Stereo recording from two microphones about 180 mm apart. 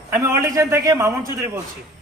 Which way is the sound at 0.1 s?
15° right (ahead or behind).